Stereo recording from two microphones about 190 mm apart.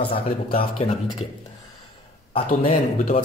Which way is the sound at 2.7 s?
40° left (ahead or behind).